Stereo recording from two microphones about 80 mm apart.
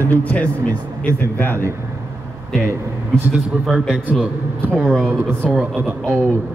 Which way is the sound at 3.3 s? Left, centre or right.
Centre.